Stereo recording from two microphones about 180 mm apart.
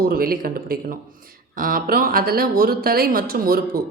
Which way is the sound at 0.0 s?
55° right (ahead or behind).